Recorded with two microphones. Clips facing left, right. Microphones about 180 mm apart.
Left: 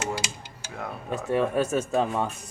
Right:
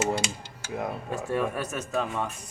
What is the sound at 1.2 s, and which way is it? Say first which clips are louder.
Speech: left 5 dB; 25° left (ahead or behind).